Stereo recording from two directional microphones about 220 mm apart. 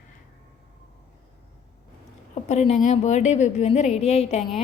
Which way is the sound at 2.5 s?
30° left (ahead or behind).